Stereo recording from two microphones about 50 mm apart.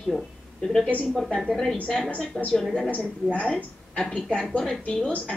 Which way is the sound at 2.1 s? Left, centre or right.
Left.